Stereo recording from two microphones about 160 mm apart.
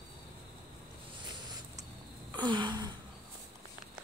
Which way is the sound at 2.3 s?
25° right (ahead or behind).